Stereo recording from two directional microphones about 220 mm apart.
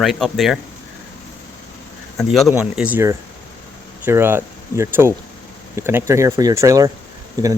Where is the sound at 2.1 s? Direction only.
Centre (ahead or behind).